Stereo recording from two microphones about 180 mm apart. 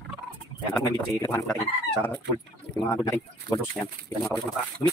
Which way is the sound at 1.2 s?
15° left (ahead or behind).